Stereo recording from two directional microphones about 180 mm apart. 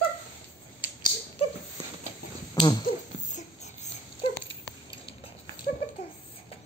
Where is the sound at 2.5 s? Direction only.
25° left (ahead or behind).